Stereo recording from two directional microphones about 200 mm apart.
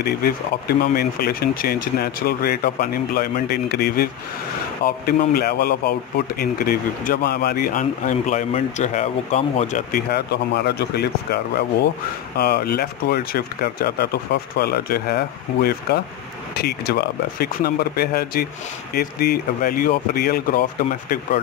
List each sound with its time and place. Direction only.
0.9 s speech: 50° left (ahead or behind)
10.1 s speech: 55° left (ahead or behind)